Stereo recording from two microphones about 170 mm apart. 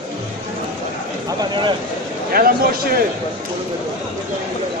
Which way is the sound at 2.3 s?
60° right (ahead or behind).